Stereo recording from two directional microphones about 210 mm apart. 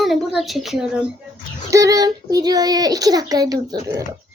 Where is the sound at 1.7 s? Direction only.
15° right (ahead or behind).